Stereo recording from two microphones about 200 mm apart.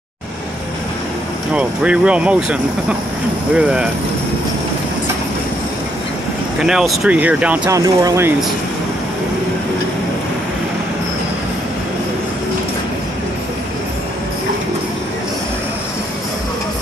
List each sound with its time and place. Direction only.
1.5 s speech: 5° right (ahead or behind)
6.6 s speech: 5° right (ahead or behind)
7.6 s speech: 20° right (ahead or behind)